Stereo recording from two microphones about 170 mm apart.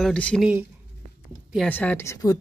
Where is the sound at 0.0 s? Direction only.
5° left (ahead or behind).